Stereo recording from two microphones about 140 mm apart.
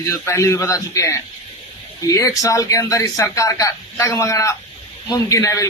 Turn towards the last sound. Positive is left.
turn(degrees=20)  # may be behind; listen again after turning